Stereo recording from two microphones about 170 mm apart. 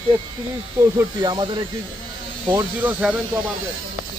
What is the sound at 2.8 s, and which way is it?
Speech, 10° right (ahead or behind).